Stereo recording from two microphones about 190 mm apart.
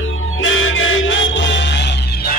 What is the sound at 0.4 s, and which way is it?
Music, 90° left.